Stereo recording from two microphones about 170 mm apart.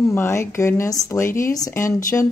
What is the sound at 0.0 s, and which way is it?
Speech, 15° left (ahead or behind).